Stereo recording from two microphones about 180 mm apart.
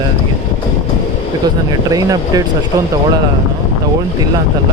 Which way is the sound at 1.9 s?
20° right (ahead or behind).